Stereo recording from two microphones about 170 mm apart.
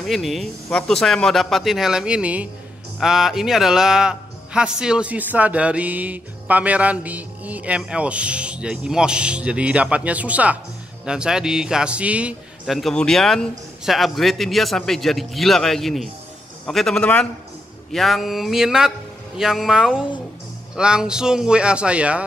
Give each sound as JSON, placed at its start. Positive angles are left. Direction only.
{"t": 0.0, "sound": "speech", "side_deg": 0}